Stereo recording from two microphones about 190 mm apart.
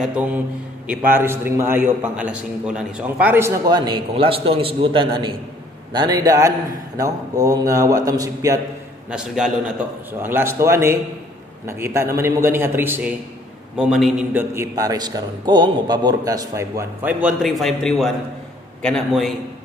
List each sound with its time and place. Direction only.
0.0 s a man's voice: 5° right (ahead or behind)
9.1 s a man's voice: 5° right (ahead or behind)